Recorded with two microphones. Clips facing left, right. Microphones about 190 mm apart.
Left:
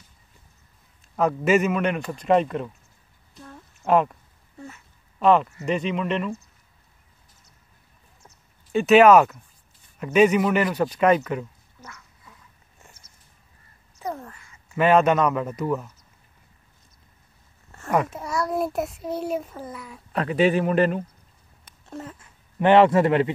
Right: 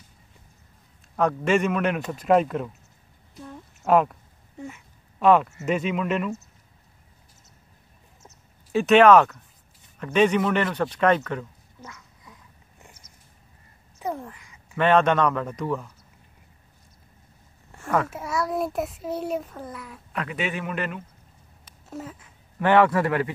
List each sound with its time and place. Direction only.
1.1 s a child's voice: 5° left (ahead or behind)
3.3 s a sound: 10° right (ahead or behind)
4.6 s speech: 15° right (ahead or behind)
5.2 s a child's voice: 5° right (ahead or behind)
8.7 s a man's voice: 5° left (ahead or behind)
11.8 s a sound: 15° right (ahead or behind)
13.9 s crow: 15° right (ahead or behind)
14.8 s a man's voice: 10° left (ahead or behind)
17.7 s a sound: 15° right (ahead or behind)
18.1 s a child's voice: 5° right (ahead or behind)
20.1 s speech: 35° left (ahead or behind)
21.6 s a sound: 5° right (ahead or behind)
22.6 s speech: 25° left (ahead or behind)